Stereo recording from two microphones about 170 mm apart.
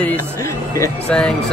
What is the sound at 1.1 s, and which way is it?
Speech, 5° left (ahead or behind).